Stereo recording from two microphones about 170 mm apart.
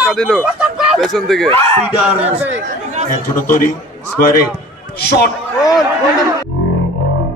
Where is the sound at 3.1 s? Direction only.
50° left (ahead or behind).